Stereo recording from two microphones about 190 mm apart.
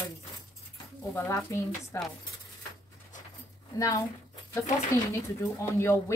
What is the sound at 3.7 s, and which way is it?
Speech, 15° left (ahead or behind).